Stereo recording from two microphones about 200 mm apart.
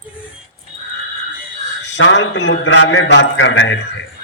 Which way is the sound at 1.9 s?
65° left (ahead or behind).